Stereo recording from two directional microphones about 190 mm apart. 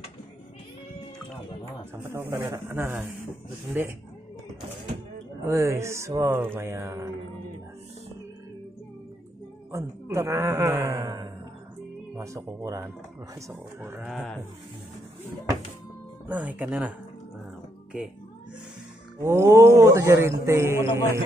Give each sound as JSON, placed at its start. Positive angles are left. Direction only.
{"t": 2.0, "sound": "a man's voice", "side_deg": -15}
{"t": 5.4, "sound": "a man's voice", "side_deg": -15}
{"t": 9.7, "sound": "a man's voice", "side_deg": -15}
{"t": 16.3, "sound": "a man's voice", "side_deg": -10}
{"t": 19.1, "sound": "a man's voice", "side_deg": -15}